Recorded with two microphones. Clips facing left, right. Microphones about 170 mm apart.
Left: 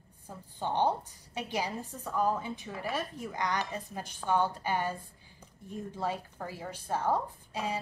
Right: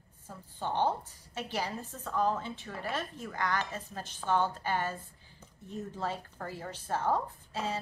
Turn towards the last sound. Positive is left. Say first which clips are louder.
# left 1 dB
turn(degrees=15)  # may be behind; listen again after turning